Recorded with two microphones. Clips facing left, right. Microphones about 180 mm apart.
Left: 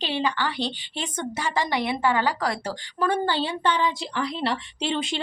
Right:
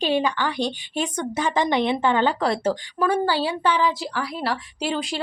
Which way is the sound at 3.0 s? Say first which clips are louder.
Right 2 dB; 10° right (ahead or behind).